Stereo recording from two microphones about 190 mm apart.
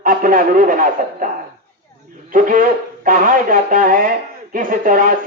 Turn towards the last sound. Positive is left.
turn(degrees=-45)  # may be behind; listen again after turning